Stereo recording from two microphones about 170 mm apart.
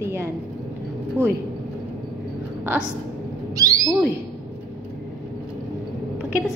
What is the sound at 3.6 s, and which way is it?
Owl, 20° right (ahead or behind).